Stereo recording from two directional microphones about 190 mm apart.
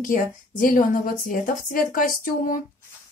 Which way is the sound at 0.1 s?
45° left (ahead or behind).